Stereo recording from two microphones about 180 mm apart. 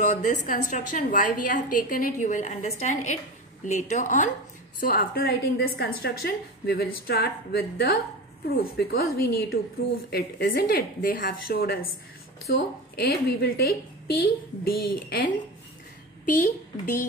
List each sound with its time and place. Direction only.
0.0 s a woman's voice: 45° left (ahead or behind)
16.3 s a woman's voice: 45° left (ahead or behind)